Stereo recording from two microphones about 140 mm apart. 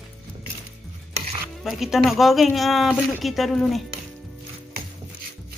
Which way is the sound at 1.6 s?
Centre (ahead or behind).